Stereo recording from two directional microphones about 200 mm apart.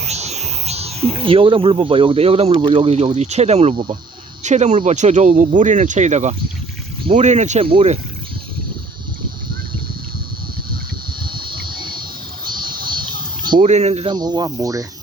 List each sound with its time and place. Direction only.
0.1 s speech: 35° right (ahead or behind)
12.5 s a sound: 20° right (ahead or behind)
13.6 s speech: 35° right (ahead or behind); by 14.8 s 15° right (ahead or behind)